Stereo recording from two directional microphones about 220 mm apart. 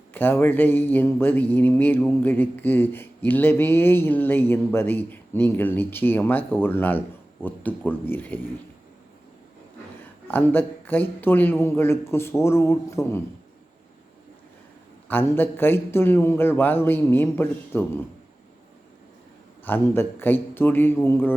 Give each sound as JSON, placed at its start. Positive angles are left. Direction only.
{"t": 0.1, "sound": "speech", "side_deg": 10}
{"t": 10.2, "sound": "speech", "side_deg": 10}
{"t": 15.0, "sound": "speech", "side_deg": 10}
{"t": 19.6, "sound": "speech", "side_deg": 10}